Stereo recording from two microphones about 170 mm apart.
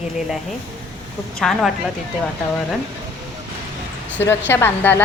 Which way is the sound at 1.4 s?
Centre (ahead or behind).